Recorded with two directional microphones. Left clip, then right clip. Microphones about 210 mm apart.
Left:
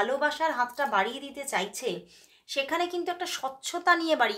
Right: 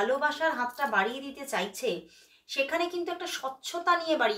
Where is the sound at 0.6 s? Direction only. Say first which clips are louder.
Left 1 dB; 50° left (ahead or behind).